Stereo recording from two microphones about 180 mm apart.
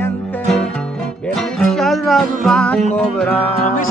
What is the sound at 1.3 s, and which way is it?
Music, 5° left (ahead or behind).